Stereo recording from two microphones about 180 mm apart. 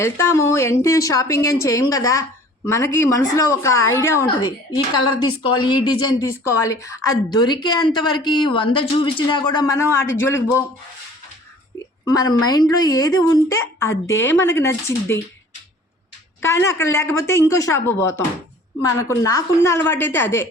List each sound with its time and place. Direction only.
0.0 s a woman's voice: 15° left (ahead or behind)
12.0 s a woman's voice: 20° left (ahead or behind)
16.4 s a woman's voice: 15° left (ahead or behind)